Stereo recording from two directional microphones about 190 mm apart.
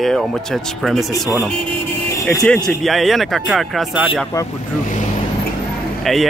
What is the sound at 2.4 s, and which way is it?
Speech, 5° left (ahead or behind).